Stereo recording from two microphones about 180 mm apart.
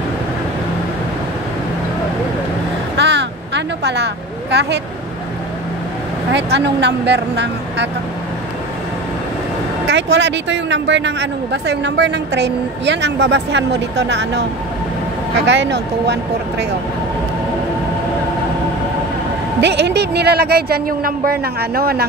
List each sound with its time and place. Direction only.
3.0 s a sound: 75° right (ahead or behind)
6.3 s speech: 70° right (ahead or behind)
9.8 s speech: 75° right (ahead or behind)
15.4 s speech: 75° right (ahead or behind)
19.6 s a woman's voice: 70° right (ahead or behind)